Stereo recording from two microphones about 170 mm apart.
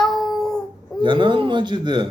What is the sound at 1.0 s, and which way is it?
Speech, 30° right (ahead or behind).